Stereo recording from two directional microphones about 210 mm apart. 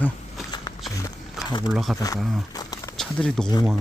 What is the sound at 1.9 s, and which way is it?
Speech, 15° left (ahead or behind).